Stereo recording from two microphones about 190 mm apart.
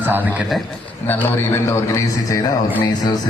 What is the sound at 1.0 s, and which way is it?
A man's voice, 10° left (ahead or behind).